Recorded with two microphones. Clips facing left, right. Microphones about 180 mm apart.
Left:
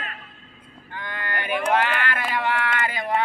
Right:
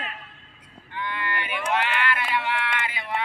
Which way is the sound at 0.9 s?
45° left (ahead or behind).